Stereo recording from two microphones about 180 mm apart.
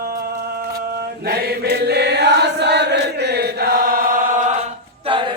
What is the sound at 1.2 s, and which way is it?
Chant, 60° right (ahead or behind).